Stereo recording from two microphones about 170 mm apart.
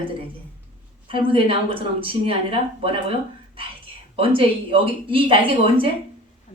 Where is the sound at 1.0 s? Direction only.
30° right (ahead or behind).